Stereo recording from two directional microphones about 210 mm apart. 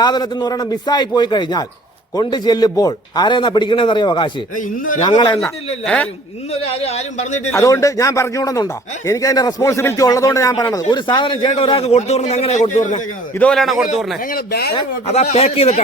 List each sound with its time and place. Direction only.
0.0 s a man's voice: 20° left (ahead or behind)
4.5 s speech: 40° left (ahead or behind)
5.0 s a man's voice: 20° left (ahead or behind)
5.8 s a man's voice: 5° left (ahead or behind)
6.5 s speech: 30° left (ahead or behind)
7.5 s speech: 15° left (ahead or behind); by 13.0 s 35° left (ahead or behind)
13.3 s a man's voice: 5° left (ahead or behind)
14.2 s speech: 45° left (ahead or behind)
14.8 s speech: 30° left (ahead or behind)